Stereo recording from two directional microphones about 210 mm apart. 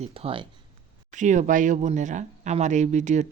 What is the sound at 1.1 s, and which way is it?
A woman's voice, 35° right (ahead or behind).